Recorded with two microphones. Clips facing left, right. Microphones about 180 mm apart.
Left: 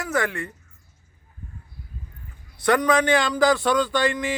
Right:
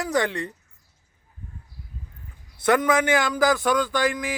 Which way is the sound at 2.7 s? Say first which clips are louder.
Left 1 dB; 5° right (ahead or behind).